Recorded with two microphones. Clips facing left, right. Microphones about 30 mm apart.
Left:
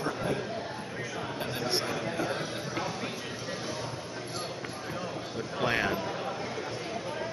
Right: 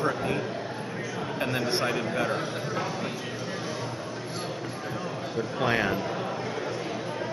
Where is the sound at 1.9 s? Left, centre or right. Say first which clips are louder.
Right 4 dB; right.